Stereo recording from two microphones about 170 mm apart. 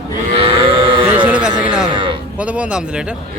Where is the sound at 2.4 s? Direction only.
10° right (ahead or behind).